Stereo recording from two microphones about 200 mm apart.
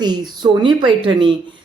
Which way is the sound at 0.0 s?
20° right (ahead or behind).